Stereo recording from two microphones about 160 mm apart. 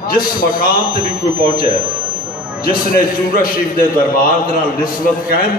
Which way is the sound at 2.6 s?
65° left (ahead or behind).